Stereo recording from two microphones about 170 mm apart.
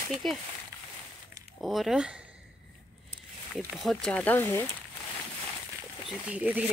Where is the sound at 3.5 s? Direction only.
Centre (ahead or behind).